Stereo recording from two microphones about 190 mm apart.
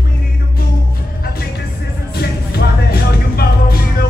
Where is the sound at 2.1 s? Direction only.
55° left (ahead or behind).